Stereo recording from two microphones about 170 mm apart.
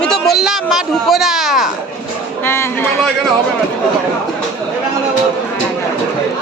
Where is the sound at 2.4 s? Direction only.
15° left (ahead or behind).